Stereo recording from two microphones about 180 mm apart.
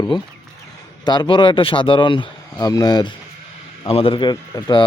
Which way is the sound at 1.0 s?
25° left (ahead or behind).